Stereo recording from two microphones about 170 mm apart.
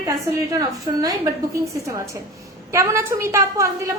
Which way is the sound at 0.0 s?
20° right (ahead or behind).